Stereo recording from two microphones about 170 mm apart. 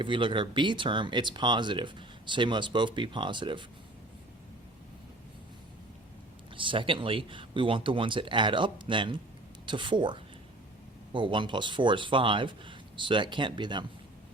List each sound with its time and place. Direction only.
0.0 s speech: 30° right (ahead or behind)
6.6 s speech: 30° right (ahead or behind)